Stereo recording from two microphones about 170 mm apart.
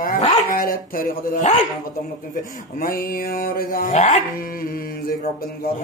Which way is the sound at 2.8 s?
60° left (ahead or behind).